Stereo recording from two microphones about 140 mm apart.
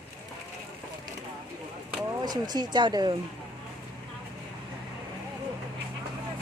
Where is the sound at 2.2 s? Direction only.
30° right (ahead or behind).